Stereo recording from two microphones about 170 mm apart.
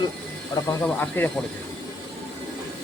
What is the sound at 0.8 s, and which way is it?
Speech, 10° left (ahead or behind).